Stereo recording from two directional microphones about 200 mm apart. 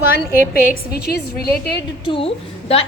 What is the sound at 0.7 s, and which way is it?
A woman's voice, 55° left (ahead or behind).